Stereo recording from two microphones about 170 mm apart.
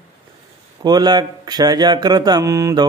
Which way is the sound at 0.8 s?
25° right (ahead or behind).